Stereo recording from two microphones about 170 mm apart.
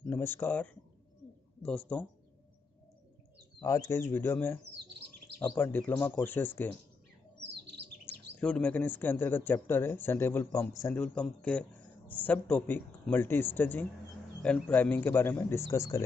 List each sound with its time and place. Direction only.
0.0 s a man's voice: 10° left (ahead or behind)
3.6 s a man's voice: 20° left (ahead or behind)
5.6 s a man's voice: 10° left (ahead or behind)
8.4 s a man's voice: 5° left (ahead or behind)